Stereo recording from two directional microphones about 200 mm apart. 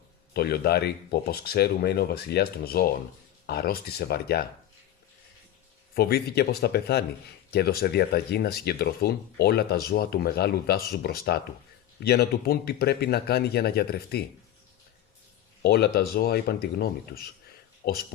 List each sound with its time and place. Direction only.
0.3 s speech: 50° left (ahead or behind)
5.9 s speech: 50° left (ahead or behind)
15.6 s speech: 50° left (ahead or behind)